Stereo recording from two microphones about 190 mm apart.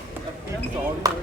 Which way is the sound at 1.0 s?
20° right (ahead or behind).